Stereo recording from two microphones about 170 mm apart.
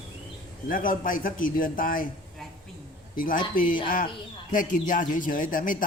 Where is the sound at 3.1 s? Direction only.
55° left (ahead or behind).